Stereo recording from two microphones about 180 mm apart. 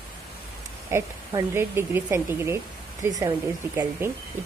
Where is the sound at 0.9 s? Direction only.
15° right (ahead or behind).